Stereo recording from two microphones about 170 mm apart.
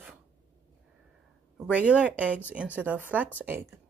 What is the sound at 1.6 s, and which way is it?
Speech, 5° right (ahead or behind).